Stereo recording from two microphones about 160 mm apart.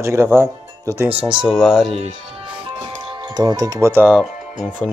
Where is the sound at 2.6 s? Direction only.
30° right (ahead or behind).